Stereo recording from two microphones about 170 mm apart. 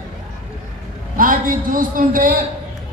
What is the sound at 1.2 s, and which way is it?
A man's voice, 55° right (ahead or behind).